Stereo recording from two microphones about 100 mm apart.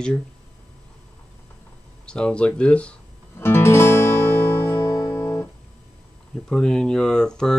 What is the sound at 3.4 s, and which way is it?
Music, 25° left (ahead or behind).